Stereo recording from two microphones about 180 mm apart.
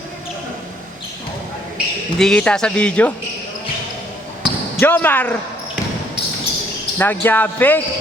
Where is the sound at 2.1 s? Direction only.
5° left (ahead or behind).